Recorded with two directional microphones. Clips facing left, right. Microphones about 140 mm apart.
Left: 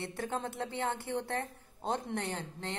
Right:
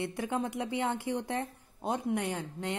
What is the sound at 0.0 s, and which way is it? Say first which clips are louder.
A woman's voice: right 4 dB; 15° right (ahead or behind).